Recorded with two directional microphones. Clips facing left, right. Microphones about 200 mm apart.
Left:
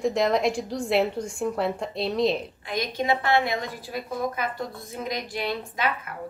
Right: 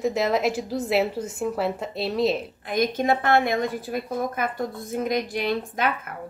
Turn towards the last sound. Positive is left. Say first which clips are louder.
# right 4 dB
turn(degrees=-50)  # may be behind; listen again after turning